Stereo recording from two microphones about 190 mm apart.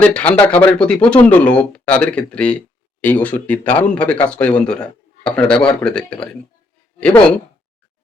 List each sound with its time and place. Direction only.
0.0 s speech: 5° left (ahead or behind)